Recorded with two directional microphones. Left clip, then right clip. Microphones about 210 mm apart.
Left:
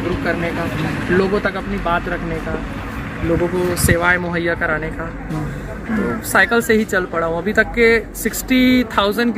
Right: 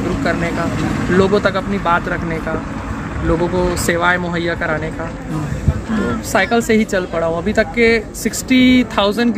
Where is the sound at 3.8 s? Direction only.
5° right (ahead or behind).